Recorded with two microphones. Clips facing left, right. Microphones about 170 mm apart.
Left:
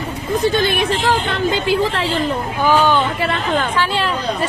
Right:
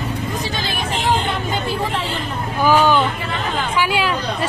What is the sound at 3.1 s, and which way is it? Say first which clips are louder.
Speech: left 5 dB; 70° left (ahead or behind).